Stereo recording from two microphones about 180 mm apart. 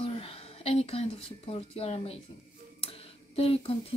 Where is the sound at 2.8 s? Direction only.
30° left (ahead or behind).